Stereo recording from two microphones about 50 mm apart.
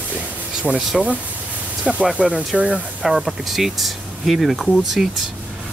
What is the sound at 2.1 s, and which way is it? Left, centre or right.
Speech, right.